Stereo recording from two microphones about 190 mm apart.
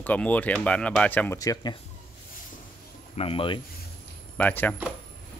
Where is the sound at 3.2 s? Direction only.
30° left (ahead or behind).